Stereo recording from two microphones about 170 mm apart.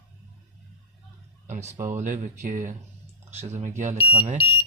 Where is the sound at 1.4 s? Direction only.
45° right (ahead or behind).